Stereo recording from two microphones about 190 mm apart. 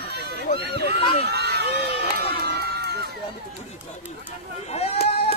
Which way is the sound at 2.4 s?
60° right (ahead or behind).